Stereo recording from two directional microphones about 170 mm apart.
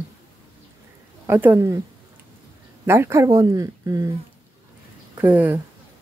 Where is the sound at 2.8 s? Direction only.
15° right (ahead or behind).